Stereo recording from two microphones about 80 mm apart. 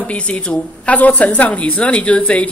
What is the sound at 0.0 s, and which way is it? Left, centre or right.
A woman's voice, centre.